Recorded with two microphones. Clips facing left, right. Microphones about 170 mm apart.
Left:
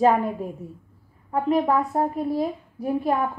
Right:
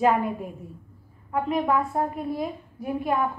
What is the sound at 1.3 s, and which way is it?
A woman's voice, 35° left (ahead or behind).